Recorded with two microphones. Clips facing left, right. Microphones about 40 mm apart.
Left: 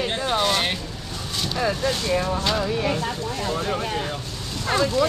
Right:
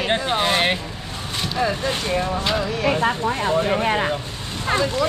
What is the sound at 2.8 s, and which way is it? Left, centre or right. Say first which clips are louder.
Speech: right 5 dB; right.